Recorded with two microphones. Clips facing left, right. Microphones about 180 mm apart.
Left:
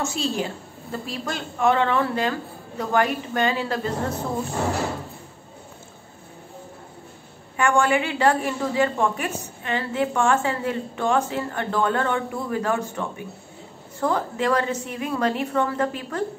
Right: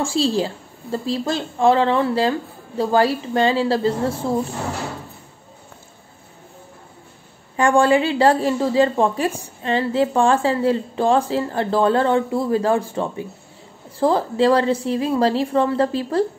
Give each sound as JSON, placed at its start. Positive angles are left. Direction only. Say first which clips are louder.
{"t": 0.0, "sound": "a woman's voice", "louder": "right 6 dB", "side_deg": -30}
{"t": 7.5, "sound": "a woman's voice", "louder": "right 5 dB", "side_deg": -35}